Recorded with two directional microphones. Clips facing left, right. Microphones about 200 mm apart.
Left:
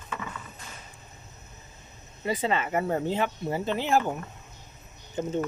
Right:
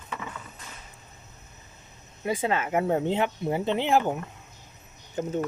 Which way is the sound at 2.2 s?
10° right (ahead or behind).